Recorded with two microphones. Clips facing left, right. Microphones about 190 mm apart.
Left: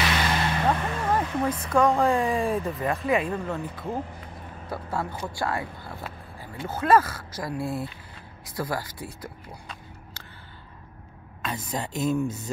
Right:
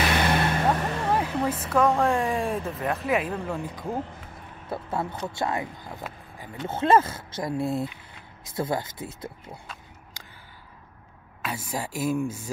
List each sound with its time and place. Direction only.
0.2 s vehicle: 55° right (ahead or behind)
0.7 s vehicle: 35° right (ahead or behind)
1.0 s speech: 10° right (ahead or behind)
11.4 s speech: 10° right (ahead or behind)